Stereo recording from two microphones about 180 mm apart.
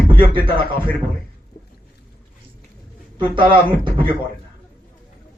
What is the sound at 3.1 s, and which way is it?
Speech, 25° right (ahead or behind).